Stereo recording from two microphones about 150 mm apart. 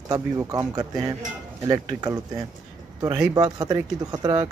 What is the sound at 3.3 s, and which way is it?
Speech, 25° right (ahead or behind).